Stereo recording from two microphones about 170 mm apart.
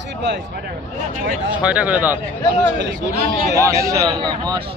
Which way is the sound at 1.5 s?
5° right (ahead or behind).